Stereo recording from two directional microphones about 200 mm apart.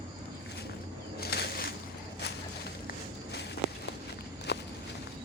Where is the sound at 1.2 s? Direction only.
50° left (ahead or behind).